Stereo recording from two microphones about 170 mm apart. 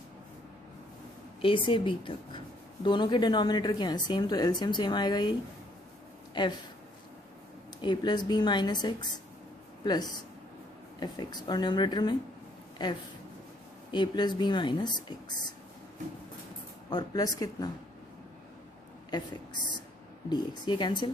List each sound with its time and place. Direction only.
1.4 s speech: 30° left (ahead or behind)
6.3 s speech: 25° left (ahead or behind)
7.8 s speech: 25° left (ahead or behind)
16.9 s speech: 20° left (ahead or behind)
19.0 s speech: 25° left (ahead or behind)